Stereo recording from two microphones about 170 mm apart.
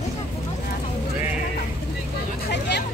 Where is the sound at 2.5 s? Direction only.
90° left.